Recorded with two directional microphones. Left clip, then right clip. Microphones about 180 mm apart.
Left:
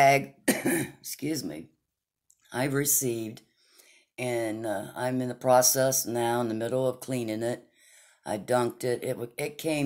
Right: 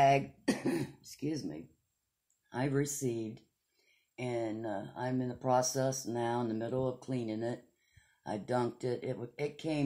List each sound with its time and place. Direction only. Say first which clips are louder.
0.0 s throat clearing: left 6 dB; 25° left (ahead or behind)
0.6 s speech: left 7 dB; 40° left (ahead or behind); by 9.8 s 20° left (ahead or behind)